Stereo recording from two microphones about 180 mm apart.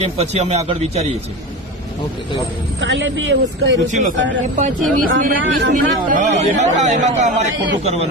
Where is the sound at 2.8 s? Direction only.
90° right.